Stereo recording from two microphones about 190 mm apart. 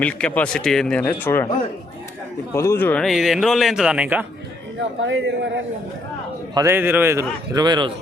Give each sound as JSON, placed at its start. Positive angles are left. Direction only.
{"t": 0.0, "sound": "speech", "side_deg": 10}
{"t": 2.5, "sound": "speech", "side_deg": 15}
{"t": 4.8, "sound": "speech", "side_deg": -75}
{"t": 6.5, "sound": "a man's voice", "side_deg": -15}